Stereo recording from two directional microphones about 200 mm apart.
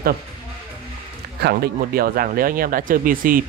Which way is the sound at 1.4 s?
50° right (ahead or behind).